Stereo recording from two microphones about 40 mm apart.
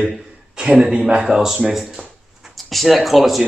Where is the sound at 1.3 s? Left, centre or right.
Centre.